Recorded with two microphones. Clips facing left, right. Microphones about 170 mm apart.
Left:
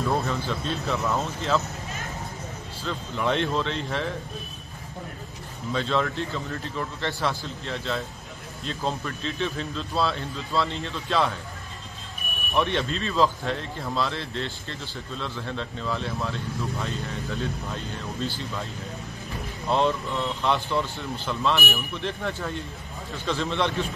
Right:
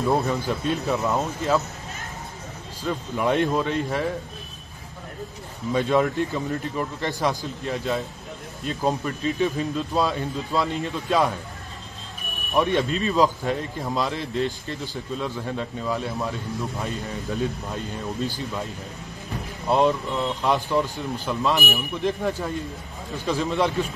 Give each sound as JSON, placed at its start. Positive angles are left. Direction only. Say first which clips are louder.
{"t": 0.1, "sound": "speech", "louder": "right 4 dB", "side_deg": -15}
{"t": 2.8, "sound": "speech", "louder": "right 4 dB", "side_deg": -10}
{"t": 5.7, "sound": "speech", "louder": "right 5 dB", "side_deg": -15}
{"t": 12.5, "sound": "speech", "louder": "right 4 dB", "side_deg": -10}
{"t": 19.7, "sound": "speech", "louder": "right 3 dB", "side_deg": -15}